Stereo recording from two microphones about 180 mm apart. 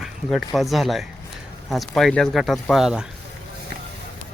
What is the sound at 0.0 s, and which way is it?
A man's voice, centre (ahead or behind).